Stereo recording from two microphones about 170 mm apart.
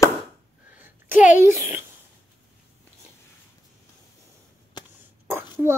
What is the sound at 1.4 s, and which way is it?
Speech, 15° right (ahead or behind).